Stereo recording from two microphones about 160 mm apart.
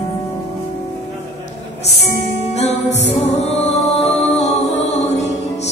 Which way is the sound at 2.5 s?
45° left (ahead or behind).